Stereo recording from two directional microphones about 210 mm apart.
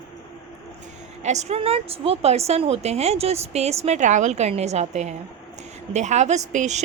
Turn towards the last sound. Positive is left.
turn(degrees=-35)  # may be behind; listen again after turning